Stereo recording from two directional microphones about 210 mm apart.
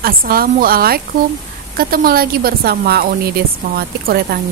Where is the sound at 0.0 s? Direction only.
45° right (ahead or behind).